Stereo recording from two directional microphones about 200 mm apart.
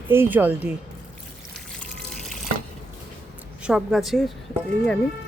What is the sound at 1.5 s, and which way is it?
Water, 5° left (ahead or behind).